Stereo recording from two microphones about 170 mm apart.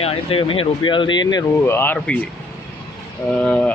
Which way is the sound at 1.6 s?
15° left (ahead or behind).